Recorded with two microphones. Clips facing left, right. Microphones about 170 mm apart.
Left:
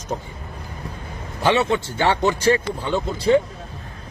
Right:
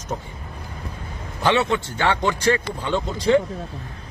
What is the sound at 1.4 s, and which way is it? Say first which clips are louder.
A man's voice: left 1 dB; 10° left (ahead or behind).